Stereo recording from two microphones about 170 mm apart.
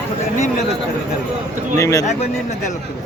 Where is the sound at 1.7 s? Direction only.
20° left (ahead or behind).